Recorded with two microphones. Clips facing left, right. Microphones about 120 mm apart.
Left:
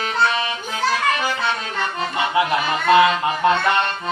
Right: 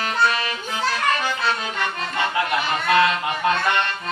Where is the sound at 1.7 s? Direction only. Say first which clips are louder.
Left 2 dB; 25° left (ahead or behind).